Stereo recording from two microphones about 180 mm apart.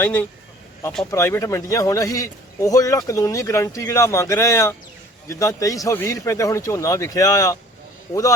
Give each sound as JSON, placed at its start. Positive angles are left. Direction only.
{"t": 0.0, "sound": "a man's voice", "side_deg": 10}